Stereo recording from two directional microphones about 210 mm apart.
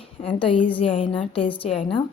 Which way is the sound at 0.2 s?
25° left (ahead or behind).